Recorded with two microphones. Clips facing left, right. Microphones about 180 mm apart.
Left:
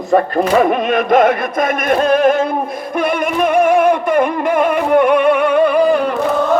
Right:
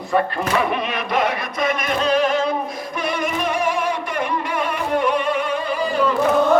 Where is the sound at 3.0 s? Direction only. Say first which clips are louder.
Left 7 dB; 55° left (ahead or behind).